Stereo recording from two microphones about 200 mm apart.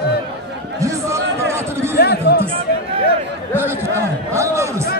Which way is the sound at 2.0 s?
55° left (ahead or behind).